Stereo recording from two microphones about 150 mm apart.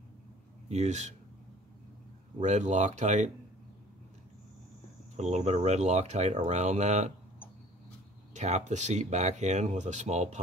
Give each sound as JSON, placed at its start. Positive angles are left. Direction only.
{"t": 0.7, "sound": "speech", "side_deg": -50}
{"t": 2.4, "sound": "speech", "side_deg": -50}
{"t": 5.1, "sound": "speech", "side_deg": -50}
{"t": 8.3, "sound": "speech", "side_deg": -50}